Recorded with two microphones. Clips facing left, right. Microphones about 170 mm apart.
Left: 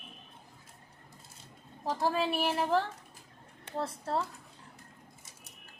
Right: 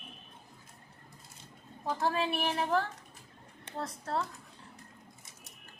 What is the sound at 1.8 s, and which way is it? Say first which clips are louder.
Speech: left 1 dB; 5° left (ahead or behind).